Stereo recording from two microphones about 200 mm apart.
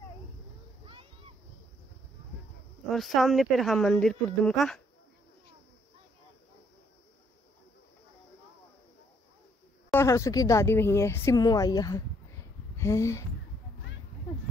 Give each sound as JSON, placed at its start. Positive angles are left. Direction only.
{"t": 0.8, "sound": "a sound", "side_deg": -25}
{"t": 2.9, "sound": "speech", "side_deg": 0}
{"t": 9.9, "sound": "a woman's voice", "side_deg": 15}